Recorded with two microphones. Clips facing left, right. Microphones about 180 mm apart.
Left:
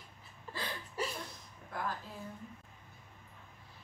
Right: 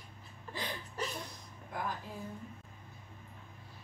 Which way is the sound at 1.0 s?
10° left (ahead or behind).